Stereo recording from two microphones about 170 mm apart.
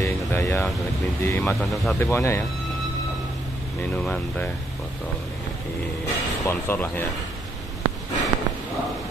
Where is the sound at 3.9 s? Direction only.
10° left (ahead or behind).